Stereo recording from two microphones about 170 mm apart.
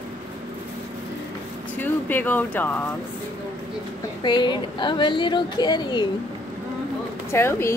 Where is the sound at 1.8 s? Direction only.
10° left (ahead or behind).